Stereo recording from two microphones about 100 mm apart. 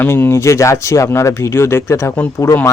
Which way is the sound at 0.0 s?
25° left (ahead or behind).